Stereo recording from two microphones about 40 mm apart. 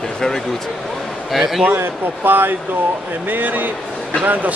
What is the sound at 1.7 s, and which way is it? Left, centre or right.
Speech, right.